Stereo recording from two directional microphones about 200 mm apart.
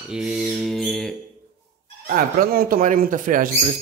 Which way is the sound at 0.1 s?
5° right (ahead or behind).